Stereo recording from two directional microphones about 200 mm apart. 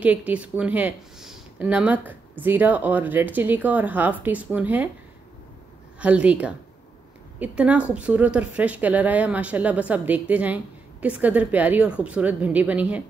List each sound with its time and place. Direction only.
0.0 s speech: 5° right (ahead or behind)
5.9 s speech: 5° right (ahead or behind)